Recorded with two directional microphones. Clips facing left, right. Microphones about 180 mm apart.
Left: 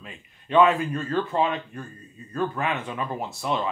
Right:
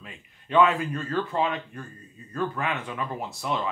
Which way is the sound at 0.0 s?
25° left (ahead or behind).